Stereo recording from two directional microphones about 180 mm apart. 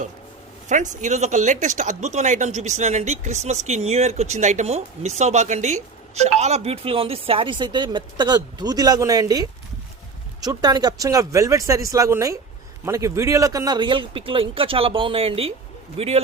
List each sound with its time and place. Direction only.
0.7 s a man's voice: 40° right (ahead or behind)